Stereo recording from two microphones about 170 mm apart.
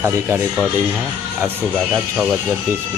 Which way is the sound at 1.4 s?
10° right (ahead or behind).